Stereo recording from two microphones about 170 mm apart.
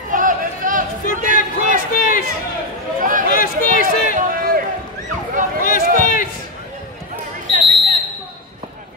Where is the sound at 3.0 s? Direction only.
55° right (ahead or behind).